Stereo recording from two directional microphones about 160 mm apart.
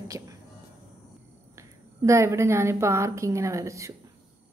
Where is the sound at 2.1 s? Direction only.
15° right (ahead or behind).